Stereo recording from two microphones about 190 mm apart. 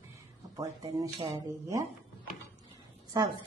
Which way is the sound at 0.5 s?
20° right (ahead or behind).